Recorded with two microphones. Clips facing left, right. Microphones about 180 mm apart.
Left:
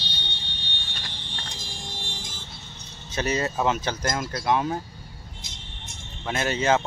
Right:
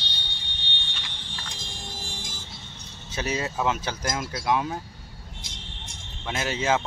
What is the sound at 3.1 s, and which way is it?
Speech, 5° right (ahead or behind).